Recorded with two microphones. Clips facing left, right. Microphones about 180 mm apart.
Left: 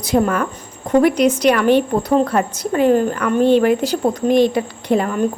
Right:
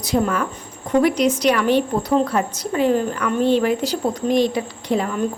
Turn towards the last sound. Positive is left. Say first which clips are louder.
# left 4 dB
turn(degrees=55)  # may be behind; listen again after turning